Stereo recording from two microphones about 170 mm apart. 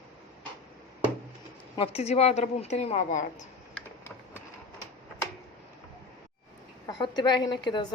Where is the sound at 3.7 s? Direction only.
15° left (ahead or behind).